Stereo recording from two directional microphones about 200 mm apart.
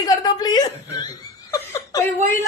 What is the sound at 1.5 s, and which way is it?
Chuckle, 15° left (ahead or behind).